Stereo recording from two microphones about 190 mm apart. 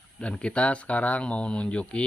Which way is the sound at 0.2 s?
5° left (ahead or behind).